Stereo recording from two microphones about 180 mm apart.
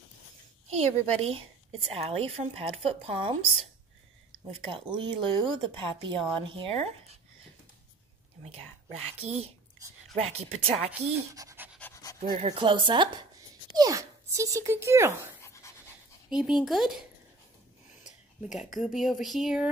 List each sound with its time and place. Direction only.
0.7 s a woman's voice: 35° right (ahead or behind)
9.2 s a woman's voice: 35° right (ahead or behind)
11.3 s pant: 15° right (ahead or behind)
11.8 s pant: 15° left (ahead or behind)
12.4 s speech: 30° right (ahead or behind); by 15.3 s 15° right (ahead or behind)
15.4 s pant: 15° left (ahead or behind)
16.3 s speech: 5° right (ahead or behind)
18.0 s speech: 5° right (ahead or behind)